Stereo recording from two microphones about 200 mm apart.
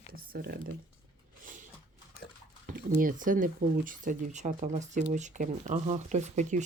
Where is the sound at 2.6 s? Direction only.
45° right (ahead or behind).